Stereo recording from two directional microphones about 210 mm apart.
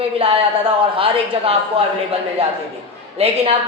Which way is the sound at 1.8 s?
25° right (ahead or behind).